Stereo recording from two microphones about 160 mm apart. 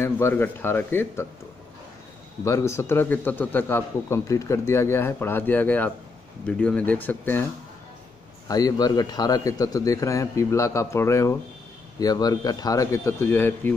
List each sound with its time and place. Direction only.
0.0 s a man's voice: 15° left (ahead or behind)
2.4 s a man's voice: 15° left (ahead or behind)
8.5 s a man's voice: 25° left (ahead or behind)